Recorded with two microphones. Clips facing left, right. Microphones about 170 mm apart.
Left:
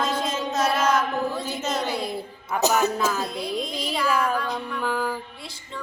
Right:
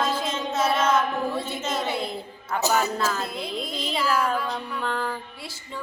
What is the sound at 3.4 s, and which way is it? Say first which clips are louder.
Mantra: left 2 dB; 5° right (ahead or behind).